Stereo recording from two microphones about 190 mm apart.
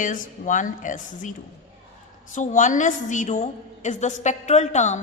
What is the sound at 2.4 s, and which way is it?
A woman's voice, 40° left (ahead or behind).